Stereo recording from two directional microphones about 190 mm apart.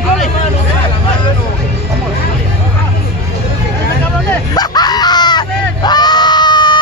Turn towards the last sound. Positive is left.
turn(degrees=25)  # may be behind; listen again after turning